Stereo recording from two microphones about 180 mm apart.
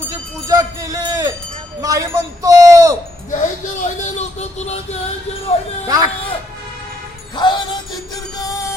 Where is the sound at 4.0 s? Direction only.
40° left (ahead or behind).